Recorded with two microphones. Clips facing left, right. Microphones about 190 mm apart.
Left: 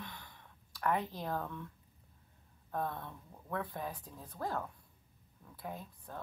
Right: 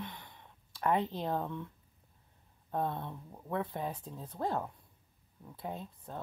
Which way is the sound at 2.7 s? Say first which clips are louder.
Right 4 dB; 25° right (ahead or behind).